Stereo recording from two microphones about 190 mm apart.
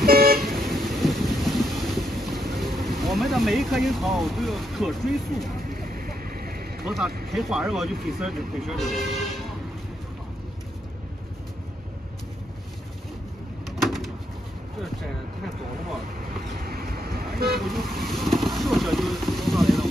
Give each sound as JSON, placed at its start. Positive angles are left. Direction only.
{"t": 0.0, "sound": "vehicle", "side_deg": -50}
{"t": 0.7, "sound": "vehicle", "side_deg": 0}
{"t": 3.0, "sound": "speech", "side_deg": 0}
{"t": 5.8, "sound": "a sound", "side_deg": -50}
{"t": 6.8, "sound": "speech", "side_deg": 0}
{"t": 13.7, "sound": "bird", "side_deg": 0}
{"t": 16.6, "sound": "vehicle", "side_deg": -55}
{"t": 17.6, "sound": "vehicle", "side_deg": 0}